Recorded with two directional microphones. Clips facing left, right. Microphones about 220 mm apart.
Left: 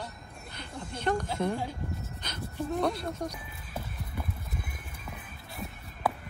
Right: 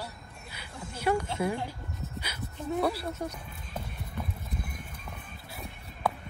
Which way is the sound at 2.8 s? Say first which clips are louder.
Even; 5° right (ahead or behind).